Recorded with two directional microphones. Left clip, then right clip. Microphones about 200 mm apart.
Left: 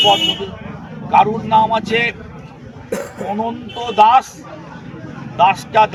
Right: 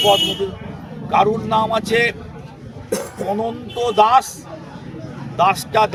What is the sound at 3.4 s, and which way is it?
Speech, 20° right (ahead or behind).